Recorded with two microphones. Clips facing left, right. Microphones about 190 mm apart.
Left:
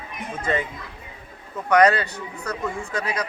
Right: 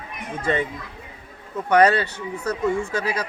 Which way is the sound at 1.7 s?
30° right (ahead or behind).